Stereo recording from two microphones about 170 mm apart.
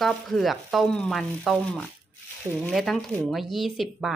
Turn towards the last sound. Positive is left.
turn(degrees=0)  # may be behind; listen again after turning